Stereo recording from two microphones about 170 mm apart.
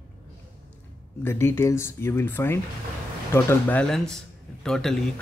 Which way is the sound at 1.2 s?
15° left (ahead or behind).